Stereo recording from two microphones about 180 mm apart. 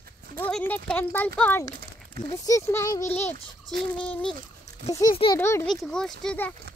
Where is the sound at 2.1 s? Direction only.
20° left (ahead or behind).